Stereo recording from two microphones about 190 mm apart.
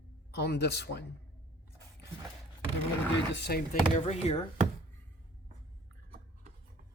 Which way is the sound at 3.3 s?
60° left (ahead or behind).